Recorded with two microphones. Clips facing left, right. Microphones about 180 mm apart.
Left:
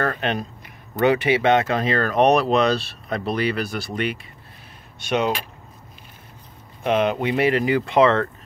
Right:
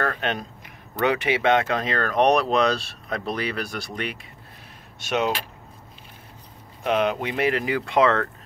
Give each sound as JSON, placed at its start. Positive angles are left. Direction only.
{"t": 0.0, "sound": "speech", "side_deg": 0}
{"t": 6.8, "sound": "speech", "side_deg": 0}